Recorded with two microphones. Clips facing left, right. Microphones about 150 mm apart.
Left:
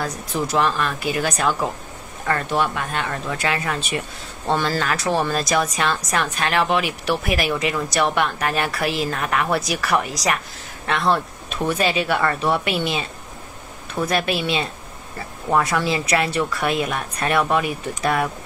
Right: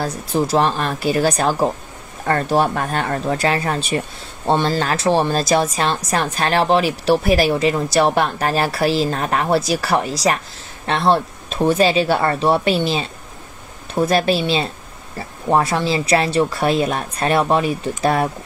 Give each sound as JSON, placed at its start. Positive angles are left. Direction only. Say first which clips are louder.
{"t": 0.0, "sound": "a woman's voice", "louder": "right 5 dB", "side_deg": -35}